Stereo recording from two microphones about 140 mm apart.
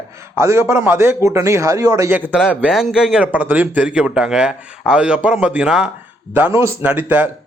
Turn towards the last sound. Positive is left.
turn(degrees=-10)  # may be behind; listen again after turning